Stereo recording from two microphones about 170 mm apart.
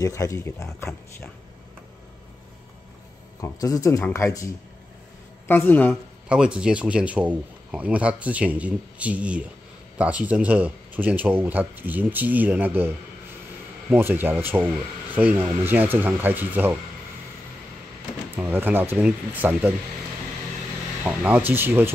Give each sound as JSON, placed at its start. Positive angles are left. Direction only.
{"t": 0.0, "sound": "speech", "side_deg": 20}
{"t": 3.3, "sound": "speech", "side_deg": 20}
{"t": 5.5, "sound": "speech", "side_deg": 10}
{"t": 6.2, "sound": "speech", "side_deg": -5}
{"t": 18.3, "sound": "speech", "side_deg": -10}
{"t": 21.0, "sound": "speech", "side_deg": -10}